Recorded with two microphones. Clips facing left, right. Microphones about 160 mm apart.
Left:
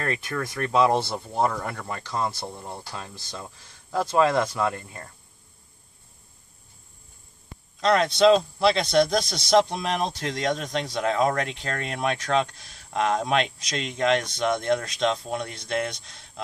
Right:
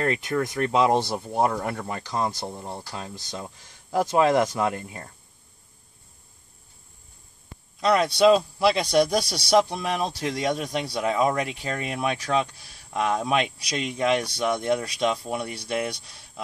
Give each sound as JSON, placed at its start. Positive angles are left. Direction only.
{"t": 0.0, "sound": "speech", "side_deg": -20}
{"t": 7.8, "sound": "speech", "side_deg": -5}